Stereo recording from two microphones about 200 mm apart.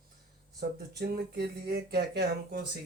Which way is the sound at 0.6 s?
50° right (ahead or behind).